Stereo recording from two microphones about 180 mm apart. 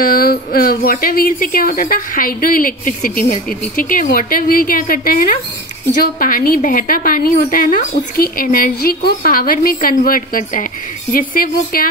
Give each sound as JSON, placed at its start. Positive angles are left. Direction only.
{"t": 0.0, "sound": "a woman's voice", "side_deg": 55}